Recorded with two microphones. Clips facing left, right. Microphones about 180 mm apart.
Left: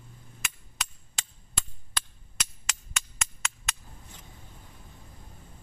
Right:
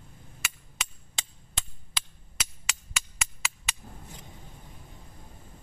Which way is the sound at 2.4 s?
5° right (ahead or behind).